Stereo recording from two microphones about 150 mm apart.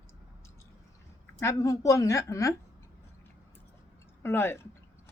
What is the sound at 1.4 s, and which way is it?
Speech, 20° left (ahead or behind).